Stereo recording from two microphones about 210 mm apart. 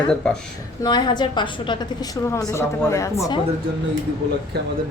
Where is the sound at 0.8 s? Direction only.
20° left (ahead or behind).